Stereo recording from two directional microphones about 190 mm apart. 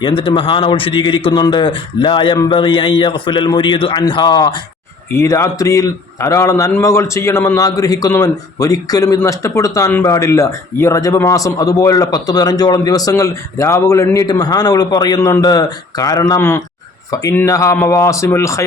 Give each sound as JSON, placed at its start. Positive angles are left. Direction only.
{"t": 0.0, "sound": "a man's voice", "side_deg": 25}